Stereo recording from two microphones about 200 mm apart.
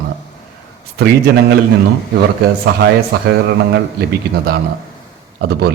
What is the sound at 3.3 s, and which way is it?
Speech, 55° right (ahead or behind).